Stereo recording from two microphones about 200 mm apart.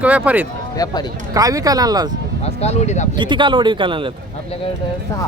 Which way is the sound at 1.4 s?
20° right (ahead or behind).